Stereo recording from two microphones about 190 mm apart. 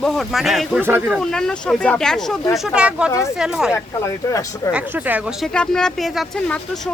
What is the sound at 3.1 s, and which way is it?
Speech, 15° left (ahead or behind).